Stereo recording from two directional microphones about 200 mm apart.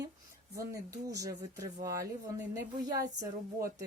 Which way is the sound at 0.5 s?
15° right (ahead or behind).